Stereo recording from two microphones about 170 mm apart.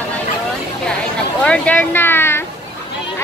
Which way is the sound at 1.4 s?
5° left (ahead or behind).